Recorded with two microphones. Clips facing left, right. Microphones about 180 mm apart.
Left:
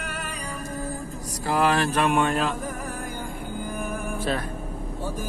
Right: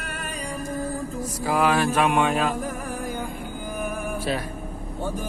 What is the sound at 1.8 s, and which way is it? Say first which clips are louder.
Speech: right 1 dB; 10° right (ahead or behind).